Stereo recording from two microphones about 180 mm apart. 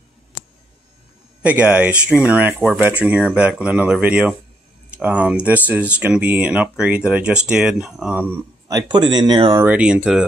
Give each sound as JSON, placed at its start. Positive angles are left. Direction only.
{"t": 1.4, "sound": "speech", "side_deg": -5}
{"t": 9.7, "sound": "speech", "side_deg": -5}